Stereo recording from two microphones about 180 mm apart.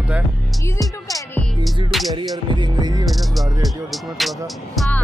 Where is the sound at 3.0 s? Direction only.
Centre (ahead or behind).